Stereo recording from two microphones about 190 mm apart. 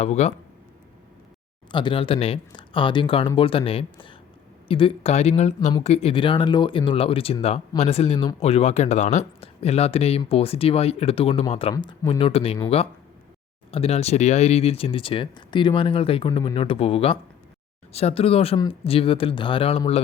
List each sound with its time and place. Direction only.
0.0 s speech: 35° left (ahead or behind)
1.7 s speech: 25° left (ahead or behind)